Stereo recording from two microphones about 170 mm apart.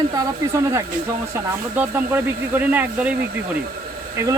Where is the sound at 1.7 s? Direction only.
10° right (ahead or behind).